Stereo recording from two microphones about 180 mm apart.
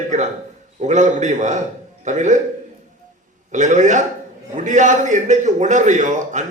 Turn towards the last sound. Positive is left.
turn(degrees=-40)  # may be behind; listen again after turning